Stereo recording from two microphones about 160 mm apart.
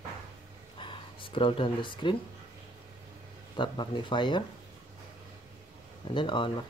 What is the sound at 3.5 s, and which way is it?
Speech, 30° left (ahead or behind).